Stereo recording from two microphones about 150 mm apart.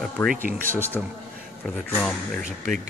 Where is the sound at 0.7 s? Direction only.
15° left (ahead or behind).